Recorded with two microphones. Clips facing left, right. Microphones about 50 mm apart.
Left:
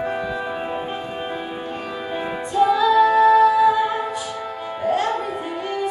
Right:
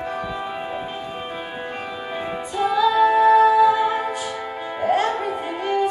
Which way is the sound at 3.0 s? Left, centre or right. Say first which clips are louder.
Even; centre.